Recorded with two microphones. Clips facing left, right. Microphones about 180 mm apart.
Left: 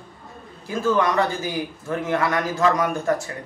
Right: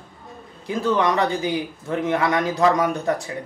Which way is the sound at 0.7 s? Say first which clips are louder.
Even; 20° right (ahead or behind).